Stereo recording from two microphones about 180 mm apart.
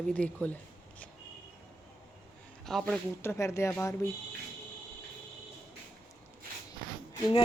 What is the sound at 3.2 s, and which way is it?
Speech, 15° left (ahead or behind).